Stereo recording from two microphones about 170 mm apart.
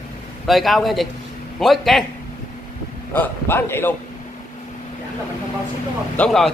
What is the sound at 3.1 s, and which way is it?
Speech, 10° left (ahead or behind).